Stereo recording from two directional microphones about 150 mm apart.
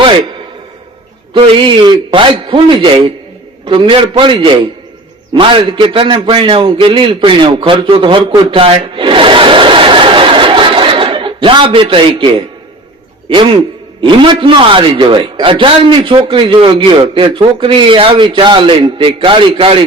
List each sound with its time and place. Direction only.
1.3 s a man's voice: 35° right (ahead or behind)